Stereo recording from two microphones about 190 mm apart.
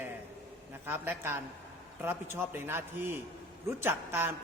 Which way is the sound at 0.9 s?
10° right (ahead or behind).